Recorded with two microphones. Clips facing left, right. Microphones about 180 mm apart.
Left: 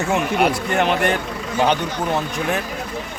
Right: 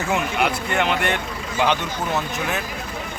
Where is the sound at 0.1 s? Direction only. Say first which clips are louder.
Left 3 dB; 40° left (ahead or behind).